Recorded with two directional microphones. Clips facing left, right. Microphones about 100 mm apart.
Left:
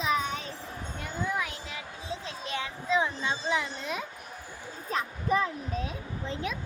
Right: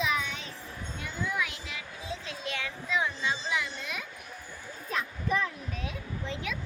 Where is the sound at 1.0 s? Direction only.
40° left (ahead or behind).